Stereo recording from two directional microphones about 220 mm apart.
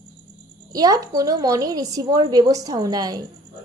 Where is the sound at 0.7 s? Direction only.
15° right (ahead or behind).